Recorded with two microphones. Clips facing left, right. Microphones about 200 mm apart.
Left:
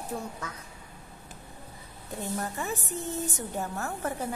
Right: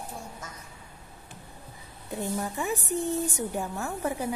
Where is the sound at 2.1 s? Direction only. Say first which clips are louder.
Right 2 dB; 15° right (ahead or behind).